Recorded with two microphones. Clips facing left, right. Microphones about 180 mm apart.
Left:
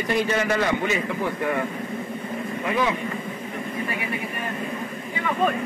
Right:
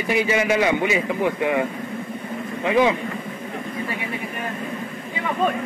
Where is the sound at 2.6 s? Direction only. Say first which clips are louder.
Right 6 dB; 25° right (ahead or behind).